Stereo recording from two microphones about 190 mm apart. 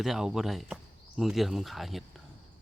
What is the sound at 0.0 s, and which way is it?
Speech, centre (ahead or behind).